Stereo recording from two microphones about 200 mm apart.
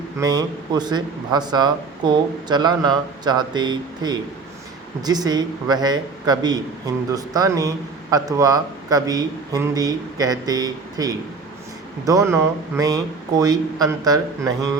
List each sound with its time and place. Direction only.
0.2 s speech: 20° right (ahead or behind)